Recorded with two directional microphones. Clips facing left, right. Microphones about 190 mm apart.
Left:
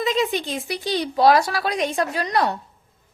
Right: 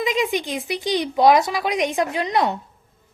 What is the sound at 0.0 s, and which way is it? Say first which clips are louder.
A woman's voice: even; 15° right (ahead or behind).